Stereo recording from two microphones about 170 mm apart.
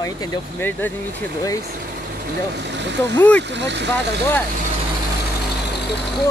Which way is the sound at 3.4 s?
90° right.